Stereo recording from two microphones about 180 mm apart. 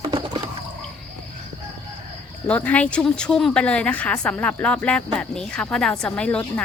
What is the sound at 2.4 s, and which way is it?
A woman's voice, 10° left (ahead or behind).